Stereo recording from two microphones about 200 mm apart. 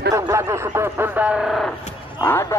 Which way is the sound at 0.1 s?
15° right (ahead or behind).